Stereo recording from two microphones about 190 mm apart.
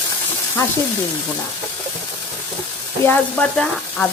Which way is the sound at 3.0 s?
5° left (ahead or behind).